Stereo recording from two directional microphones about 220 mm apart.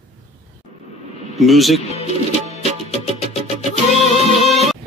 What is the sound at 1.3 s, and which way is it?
Speech, centre (ahead or behind).